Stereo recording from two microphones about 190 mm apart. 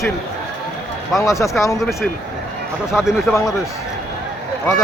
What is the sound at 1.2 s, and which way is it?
Speech, 15° left (ahead or behind).